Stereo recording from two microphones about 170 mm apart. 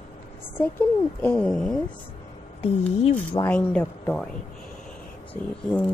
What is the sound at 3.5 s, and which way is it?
Speech, 10° left (ahead or behind).